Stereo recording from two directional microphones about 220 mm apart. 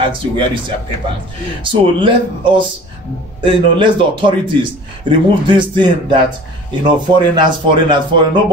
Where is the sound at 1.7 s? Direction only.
20° right (ahead or behind).